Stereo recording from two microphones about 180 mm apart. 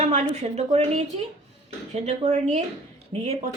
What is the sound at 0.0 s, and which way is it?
A woman's voice, 35° right (ahead or behind).